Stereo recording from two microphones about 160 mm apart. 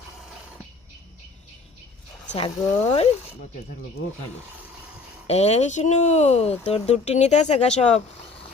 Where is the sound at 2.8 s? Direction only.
40° left (ahead or behind).